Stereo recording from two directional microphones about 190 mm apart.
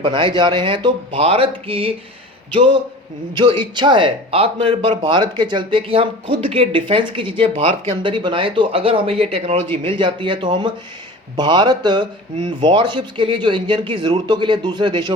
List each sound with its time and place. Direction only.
0.0 s speech: 25° right (ahead or behind)